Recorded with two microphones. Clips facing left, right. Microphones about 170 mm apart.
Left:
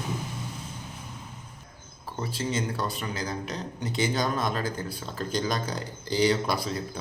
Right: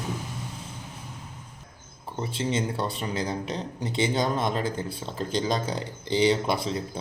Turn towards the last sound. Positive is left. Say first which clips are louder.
# right 2 dB
turn(degrees=-25)  # may be behind; listen again after turning